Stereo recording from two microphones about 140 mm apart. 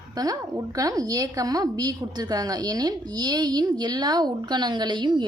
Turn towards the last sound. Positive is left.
turn(degrees=-30)  # may be behind; listen again after turning